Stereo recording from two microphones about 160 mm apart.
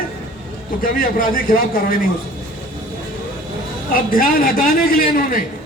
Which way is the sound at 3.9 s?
60° left (ahead or behind).